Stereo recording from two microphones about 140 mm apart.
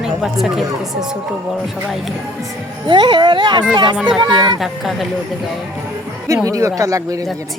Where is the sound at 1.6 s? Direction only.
Centre (ahead or behind).